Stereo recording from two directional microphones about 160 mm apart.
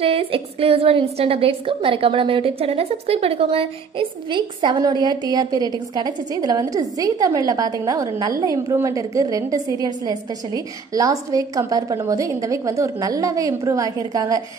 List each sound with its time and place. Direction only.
0.0 s a woman's voice: 35° right (ahead or behind); by 14.4 s 20° right (ahead or behind)